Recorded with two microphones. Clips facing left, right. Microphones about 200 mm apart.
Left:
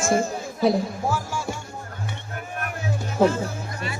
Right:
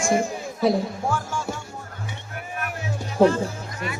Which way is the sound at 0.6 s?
Centre (ahead or behind).